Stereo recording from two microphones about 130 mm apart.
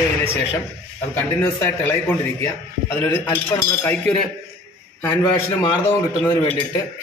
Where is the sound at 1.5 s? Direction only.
15° left (ahead or behind).